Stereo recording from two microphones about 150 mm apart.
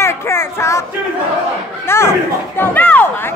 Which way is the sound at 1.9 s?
15° left (ahead or behind).